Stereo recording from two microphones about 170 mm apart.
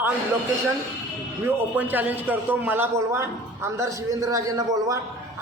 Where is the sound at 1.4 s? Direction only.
10° right (ahead or behind).